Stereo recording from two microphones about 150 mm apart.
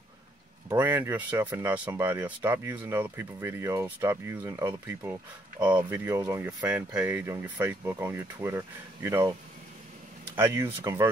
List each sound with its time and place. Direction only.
0.7 s speech: 15° right (ahead or behind)
5.6 s speech: 30° right (ahead or behind)
5.9 s speech: 15° right (ahead or behind)
10.3 s speech: 15° right (ahead or behind)